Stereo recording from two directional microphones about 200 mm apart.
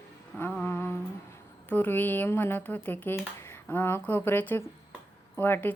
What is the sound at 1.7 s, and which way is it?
Speech, 10° left (ahead or behind).